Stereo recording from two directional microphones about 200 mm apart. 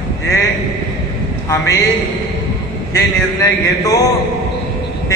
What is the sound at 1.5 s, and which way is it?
Speech, 15° left (ahead or behind).